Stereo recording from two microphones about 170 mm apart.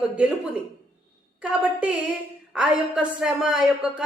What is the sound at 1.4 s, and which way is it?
A woman's voice, 5° right (ahead or behind).